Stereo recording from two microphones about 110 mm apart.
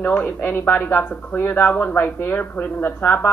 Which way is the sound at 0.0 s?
20° left (ahead or behind).